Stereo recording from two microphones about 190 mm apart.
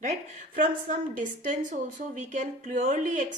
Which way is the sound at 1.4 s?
45° right (ahead or behind).